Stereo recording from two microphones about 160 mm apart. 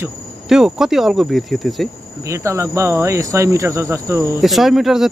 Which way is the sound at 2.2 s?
20° right (ahead or behind).